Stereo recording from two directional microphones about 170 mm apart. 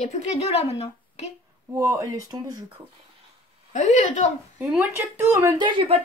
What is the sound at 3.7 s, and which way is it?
Speech, 45° left (ahead or behind).